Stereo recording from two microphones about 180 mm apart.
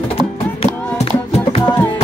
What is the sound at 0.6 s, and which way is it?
Music, 35° left (ahead or behind).